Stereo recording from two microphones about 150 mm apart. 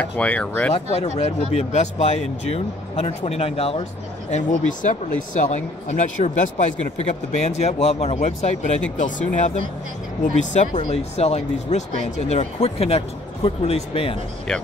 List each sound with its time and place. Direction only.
0.0 s speech: 10° left (ahead or behind)
0.7 s speech: 50° left (ahead or behind)
4.3 s speech: 55° left (ahead or behind)